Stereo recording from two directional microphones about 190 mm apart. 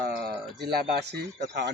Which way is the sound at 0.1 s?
55° right (ahead or behind).